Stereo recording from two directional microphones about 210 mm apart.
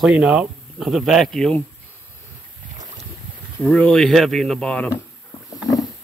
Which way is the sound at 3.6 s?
5° left (ahead or behind).